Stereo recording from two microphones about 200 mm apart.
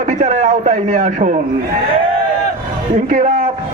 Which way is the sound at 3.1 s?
40° right (ahead or behind).